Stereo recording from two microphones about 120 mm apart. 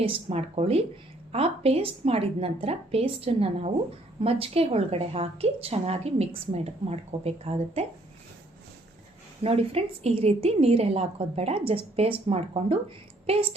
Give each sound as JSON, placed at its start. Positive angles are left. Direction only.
{"t": 0.0, "sound": "a woman's voice", "side_deg": -55}
{"t": 9.4, "sound": "a woman's voice", "side_deg": -55}